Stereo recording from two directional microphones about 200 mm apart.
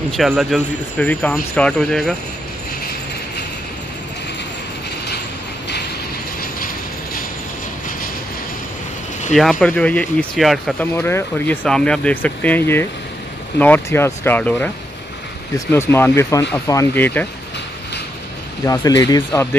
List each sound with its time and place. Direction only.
0.2 s speech: centre (ahead or behind)
9.3 s speech: centre (ahead or behind)
18.7 s speech: 20° left (ahead or behind)